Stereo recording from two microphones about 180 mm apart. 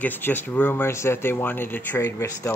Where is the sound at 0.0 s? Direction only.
10° left (ahead or behind).